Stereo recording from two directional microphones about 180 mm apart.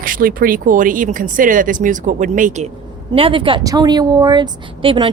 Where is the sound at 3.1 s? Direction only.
30° right (ahead or behind).